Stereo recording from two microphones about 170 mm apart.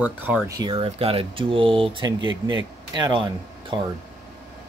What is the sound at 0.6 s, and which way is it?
Speech, 25° right (ahead or behind).